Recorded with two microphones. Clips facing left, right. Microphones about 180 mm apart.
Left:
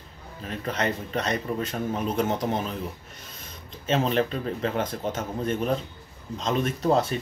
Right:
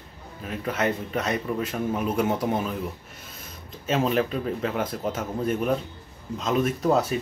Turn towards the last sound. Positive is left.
turn(degrees=-5)  # may be behind; listen again after turning